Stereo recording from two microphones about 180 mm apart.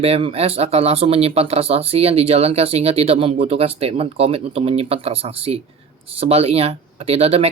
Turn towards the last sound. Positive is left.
turn(degrees=-35)  # may be behind; listen again after turning